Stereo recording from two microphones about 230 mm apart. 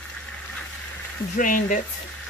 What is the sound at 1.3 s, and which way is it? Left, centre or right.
Speech, left.